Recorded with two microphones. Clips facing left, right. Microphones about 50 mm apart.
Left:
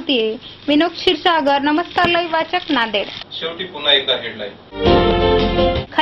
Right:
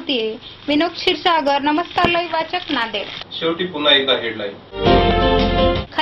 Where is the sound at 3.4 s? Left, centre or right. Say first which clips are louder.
Right 3 dB; centre.